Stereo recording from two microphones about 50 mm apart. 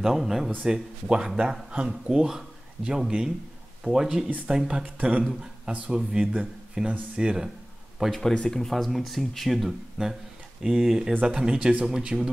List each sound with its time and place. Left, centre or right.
0.0 s a man's voice: centre
5.7 s speech: right
8.1 s speech: centre